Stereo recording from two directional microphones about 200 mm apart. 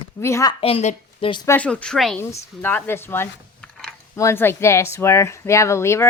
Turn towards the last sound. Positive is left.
turn(degrees=15)  # may be behind; listen again after turning